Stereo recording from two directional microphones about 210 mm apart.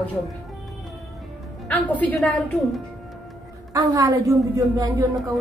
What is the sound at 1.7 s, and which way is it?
Speech, 5° left (ahead or behind).